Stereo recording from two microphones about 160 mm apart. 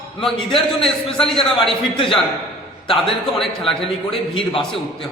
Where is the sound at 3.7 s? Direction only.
35° left (ahead or behind).